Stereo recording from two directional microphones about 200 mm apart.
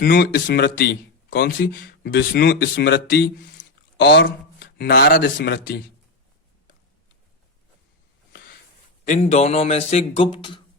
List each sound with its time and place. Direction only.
0.0 s speech: 50° left (ahead or behind)
4.3 s speech: 50° left (ahead or behind)
9.0 s a man's voice: 35° left (ahead or behind)